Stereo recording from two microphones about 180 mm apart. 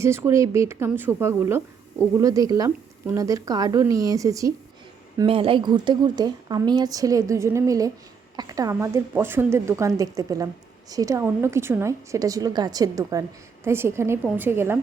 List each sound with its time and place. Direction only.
0.0 s a woman's voice: 15° right (ahead or behind)
5.1 s a woman's voice: 30° right (ahead or behind); by 14.8 s 15° right (ahead or behind)